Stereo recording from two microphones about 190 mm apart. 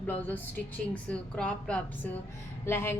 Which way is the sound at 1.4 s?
5° left (ahead or behind).